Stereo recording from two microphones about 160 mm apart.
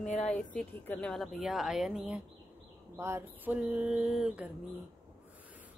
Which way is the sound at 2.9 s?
15° right (ahead or behind).